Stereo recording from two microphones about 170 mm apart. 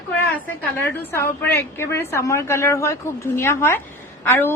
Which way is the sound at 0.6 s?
10° left (ahead or behind).